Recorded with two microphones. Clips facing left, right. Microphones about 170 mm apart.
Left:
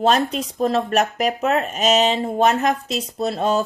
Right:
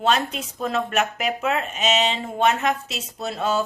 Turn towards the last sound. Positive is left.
turn(degrees=35)  # may be behind; listen again after turning